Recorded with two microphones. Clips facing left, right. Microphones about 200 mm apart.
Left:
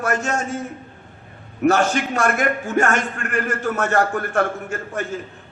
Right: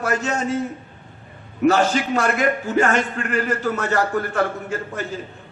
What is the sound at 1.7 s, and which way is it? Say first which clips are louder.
A man's voice: even; 50° left (ahead or behind).